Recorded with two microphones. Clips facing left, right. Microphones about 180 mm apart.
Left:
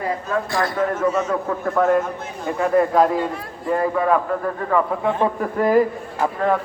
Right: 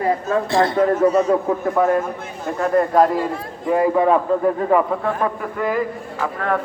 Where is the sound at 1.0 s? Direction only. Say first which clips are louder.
Right 5 dB; 35° right (ahead or behind).